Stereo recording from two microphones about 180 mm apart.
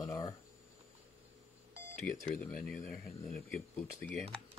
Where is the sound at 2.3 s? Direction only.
5° left (ahead or behind).